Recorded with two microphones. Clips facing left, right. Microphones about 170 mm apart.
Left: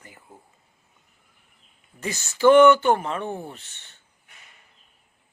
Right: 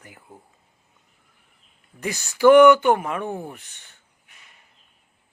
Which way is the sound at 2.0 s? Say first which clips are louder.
Right 2 dB; 15° right (ahead or behind).